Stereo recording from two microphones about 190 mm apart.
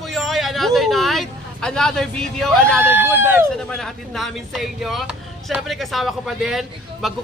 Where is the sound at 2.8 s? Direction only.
10° right (ahead or behind).